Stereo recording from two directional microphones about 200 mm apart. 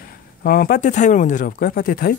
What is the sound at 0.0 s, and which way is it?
Speech, 50° left (ahead or behind).